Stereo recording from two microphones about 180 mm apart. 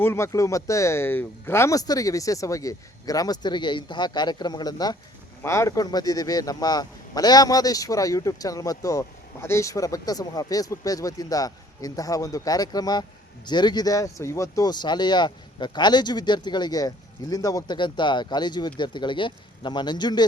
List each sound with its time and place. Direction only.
0.0 s a man's voice: 15° left (ahead or behind)